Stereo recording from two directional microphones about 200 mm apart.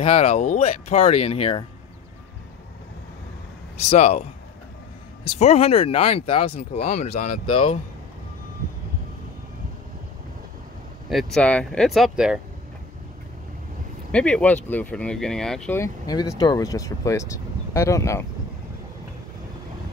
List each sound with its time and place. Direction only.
0.0 s speech: 35° left (ahead or behind)
3.7 s speech: 35° left (ahead or behind)
5.2 s speech: 30° left (ahead or behind)
11.1 s speech: centre (ahead or behind)
14.1 s speech: 5° left (ahead or behind)